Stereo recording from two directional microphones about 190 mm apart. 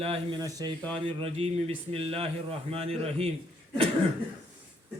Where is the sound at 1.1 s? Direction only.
30° right (ahead or behind).